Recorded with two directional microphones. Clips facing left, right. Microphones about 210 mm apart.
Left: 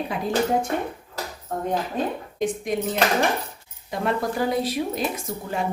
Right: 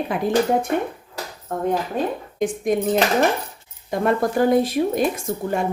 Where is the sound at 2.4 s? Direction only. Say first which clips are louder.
Right 4 dB; 50° right (ahead or behind).